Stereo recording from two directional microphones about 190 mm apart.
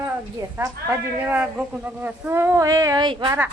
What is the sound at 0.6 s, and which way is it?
Speech, 15° right (ahead or behind).